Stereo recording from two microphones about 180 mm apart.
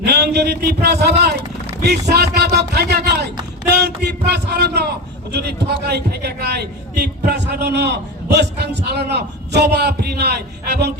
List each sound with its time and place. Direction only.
0.0 s a man's voice: 65° right (ahead or behind)